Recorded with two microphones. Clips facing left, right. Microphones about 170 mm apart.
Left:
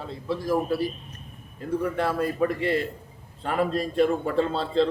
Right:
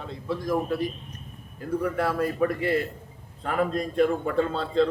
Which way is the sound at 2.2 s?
25° left (ahead or behind).